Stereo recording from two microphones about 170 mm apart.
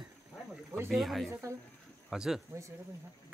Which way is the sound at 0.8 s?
Centre (ahead or behind).